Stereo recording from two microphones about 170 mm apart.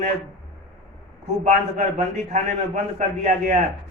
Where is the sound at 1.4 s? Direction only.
45° right (ahead or behind).